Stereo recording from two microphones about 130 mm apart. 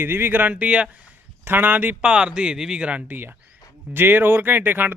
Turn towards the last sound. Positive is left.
turn(degrees=-15)  # may be behind; listen again after turning